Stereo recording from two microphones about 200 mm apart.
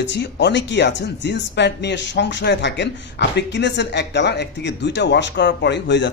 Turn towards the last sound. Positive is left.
turn(degrees=60)  # may be behind; listen again after turning